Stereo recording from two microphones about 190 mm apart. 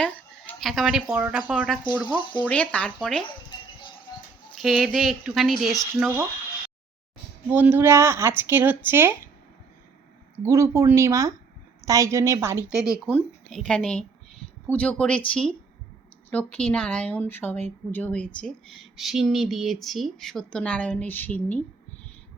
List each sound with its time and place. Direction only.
0.0 s speech: centre (ahead or behind)
4.5 s speech: centre (ahead or behind)
7.5 s speech: 10° right (ahead or behind)
10.4 s speech: 15° right (ahead or behind)
13.1 s speech: 5° left (ahead or behind)